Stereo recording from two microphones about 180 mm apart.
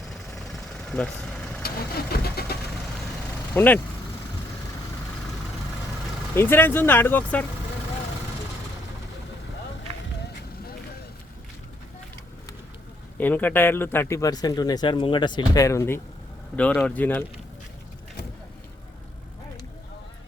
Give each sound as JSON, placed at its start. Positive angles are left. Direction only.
{"t": 0.3, "sound": "vehicle", "side_deg": 0}
{"t": 1.6, "sound": "speech", "side_deg": 60}
{"t": 3.5, "sound": "speech", "side_deg": 10}
{"t": 6.3, "sound": "a man's voice", "side_deg": 15}
{"t": 13.1, "sound": "a man's voice", "side_deg": 10}